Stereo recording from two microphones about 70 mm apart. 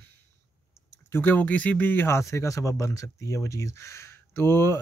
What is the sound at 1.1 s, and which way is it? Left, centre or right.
Speech, left.